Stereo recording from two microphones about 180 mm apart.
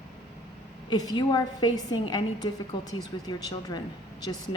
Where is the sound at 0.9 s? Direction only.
25° left (ahead or behind).